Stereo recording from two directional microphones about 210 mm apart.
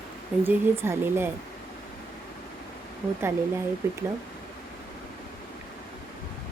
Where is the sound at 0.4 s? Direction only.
10° right (ahead or behind).